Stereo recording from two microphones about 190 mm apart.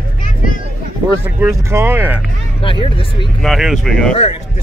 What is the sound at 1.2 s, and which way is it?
Speech, 15° right (ahead or behind).